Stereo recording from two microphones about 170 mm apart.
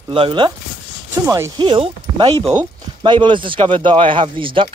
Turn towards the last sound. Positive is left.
turn(degrees=-30)  # may be behind; listen again after turning